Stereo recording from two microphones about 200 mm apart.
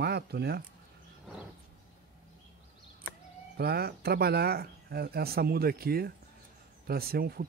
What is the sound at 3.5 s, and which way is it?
Speech, 55° right (ahead or behind).